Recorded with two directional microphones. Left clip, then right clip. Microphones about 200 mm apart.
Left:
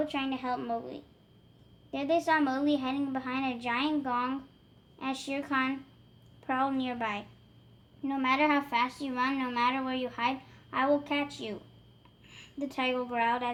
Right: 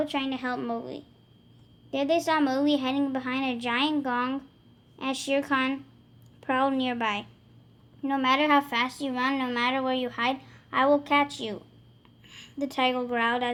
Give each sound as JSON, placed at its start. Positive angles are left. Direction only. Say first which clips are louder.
{"t": 0.0, "sound": "a woman's voice", "louder": "right 3 dB", "side_deg": -35}